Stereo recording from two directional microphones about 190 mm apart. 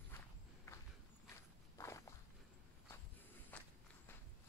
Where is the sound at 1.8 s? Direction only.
15° left (ahead or behind).